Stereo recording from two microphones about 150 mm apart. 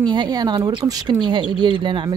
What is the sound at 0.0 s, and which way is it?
Speech, 30° right (ahead or behind).